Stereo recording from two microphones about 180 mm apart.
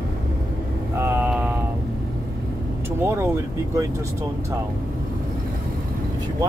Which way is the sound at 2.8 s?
15° right (ahead or behind).